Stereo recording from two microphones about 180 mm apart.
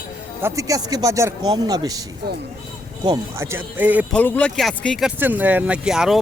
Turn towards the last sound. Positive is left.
turn(degrees=0)  # may be behind; listen again after turning